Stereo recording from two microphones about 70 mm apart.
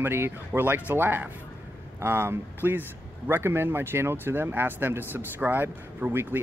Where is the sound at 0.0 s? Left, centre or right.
Right.